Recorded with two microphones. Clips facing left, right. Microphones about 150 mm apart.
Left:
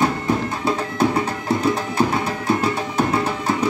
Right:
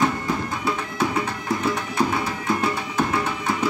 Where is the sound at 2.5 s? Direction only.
35° left (ahead or behind).